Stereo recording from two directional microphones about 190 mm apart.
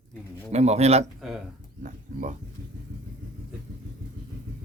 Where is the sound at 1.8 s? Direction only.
40° right (ahead or behind).